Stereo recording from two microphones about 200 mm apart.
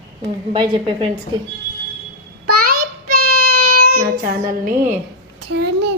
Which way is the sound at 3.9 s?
45° right (ahead or behind).